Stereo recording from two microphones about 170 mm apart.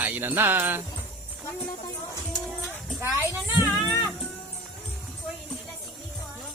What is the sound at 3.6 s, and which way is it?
Music, 15° left (ahead or behind).